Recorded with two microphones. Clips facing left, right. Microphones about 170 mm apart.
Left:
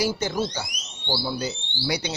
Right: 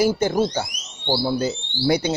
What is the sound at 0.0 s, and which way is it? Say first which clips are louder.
Speech: right 6 dB; 50° right (ahead or behind).